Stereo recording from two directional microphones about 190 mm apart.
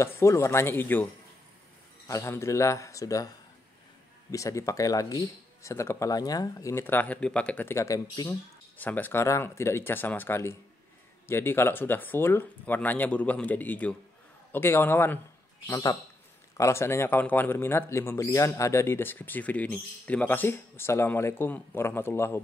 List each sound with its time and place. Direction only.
0.0 s speech: 15° left (ahead or behind)
2.0 s speech: 15° left (ahead or behind)
4.3 s speech: 15° left (ahead or behind)